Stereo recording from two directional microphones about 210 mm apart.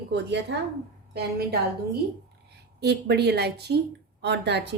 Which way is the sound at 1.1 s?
50° right (ahead or behind).